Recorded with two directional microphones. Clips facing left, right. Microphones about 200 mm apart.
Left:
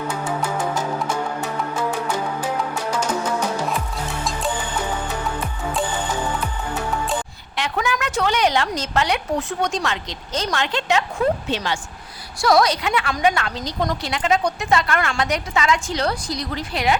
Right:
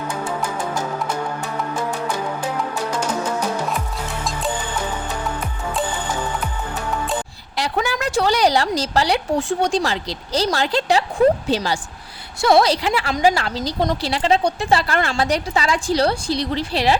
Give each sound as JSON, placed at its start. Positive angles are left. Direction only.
{"t": 7.5, "sound": "a woman's voice", "side_deg": -35}